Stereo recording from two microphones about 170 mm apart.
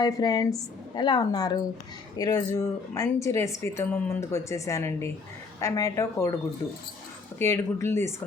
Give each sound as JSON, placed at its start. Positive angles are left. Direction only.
{"t": 0.0, "sound": "a woman's voice", "side_deg": 25}
{"t": 7.3, "sound": "speech", "side_deg": 15}